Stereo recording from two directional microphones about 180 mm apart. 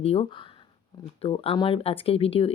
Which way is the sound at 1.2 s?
30° left (ahead or behind).